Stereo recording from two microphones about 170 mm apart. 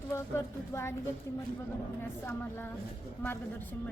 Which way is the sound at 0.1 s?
15° left (ahead or behind).